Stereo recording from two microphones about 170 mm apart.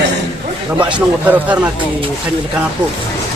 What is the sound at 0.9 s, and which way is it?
Speech, 10° right (ahead or behind).